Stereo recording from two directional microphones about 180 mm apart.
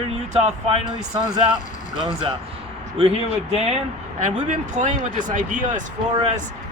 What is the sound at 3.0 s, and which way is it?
Speech, 35° right (ahead or behind).